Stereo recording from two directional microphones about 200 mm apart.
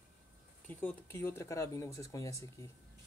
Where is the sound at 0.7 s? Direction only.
10° left (ahead or behind).